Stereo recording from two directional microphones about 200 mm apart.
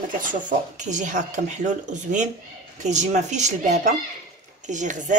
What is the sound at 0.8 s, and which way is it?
A woman's voice, 35° right (ahead or behind).